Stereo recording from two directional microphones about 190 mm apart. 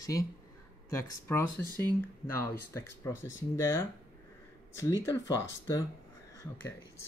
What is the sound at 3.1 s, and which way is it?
Speech, 80° left.